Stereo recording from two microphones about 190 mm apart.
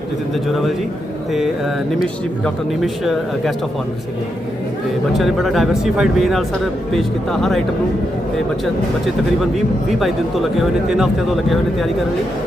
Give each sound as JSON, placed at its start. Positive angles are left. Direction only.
{"t": 0.4, "sound": "speech", "side_deg": 0}
{"t": 2.0, "sound": "speech", "side_deg": 0}
{"t": 5.1, "sound": "speech", "side_deg": 0}
{"t": 10.6, "sound": "speech", "side_deg": -5}